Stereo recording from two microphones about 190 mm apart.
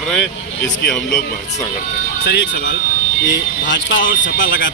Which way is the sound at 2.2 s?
65° left (ahead or behind).